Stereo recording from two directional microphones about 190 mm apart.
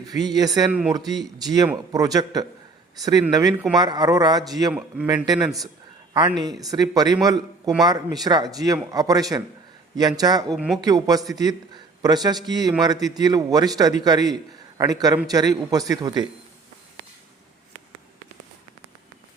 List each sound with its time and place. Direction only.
0.1 s a man's voice: 20° right (ahead or behind)
0.7 s a man's voice: 5° right (ahead or behind)
0.9 s a man's voice: 20° right (ahead or behind)
10.5 s a man's voice: centre (ahead or behind)
10.8 s a man's voice: 20° right (ahead or behind)